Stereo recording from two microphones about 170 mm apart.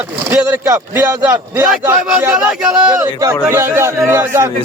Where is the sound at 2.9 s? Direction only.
20° right (ahead or behind).